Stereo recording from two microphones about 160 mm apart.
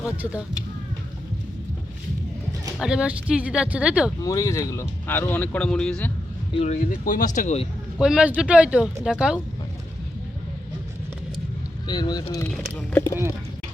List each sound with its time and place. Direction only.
0.0 s speech: 5° right (ahead or behind)
2.7 s speech: 5° right (ahead or behind)
4.2 s speech: 20° left (ahead or behind); by 6.1 s 5° left (ahead or behind)
6.5 s speech: 40° left (ahead or behind)
7.0 s speech: 60° left (ahead or behind)
7.3 s speech: 45° left (ahead or behind)
7.9 s speech: 5° right (ahead or behind)
11.9 s speech: 25° left (ahead or behind)
12.5 s speech: 10° left (ahead or behind)